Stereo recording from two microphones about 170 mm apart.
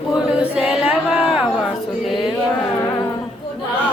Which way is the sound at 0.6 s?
5° right (ahead or behind).